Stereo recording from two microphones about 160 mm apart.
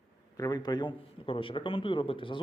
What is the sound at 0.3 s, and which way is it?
Speech, 25° left (ahead or behind).